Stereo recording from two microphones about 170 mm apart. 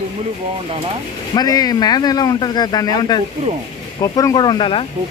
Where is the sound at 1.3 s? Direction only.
25° left (ahead or behind).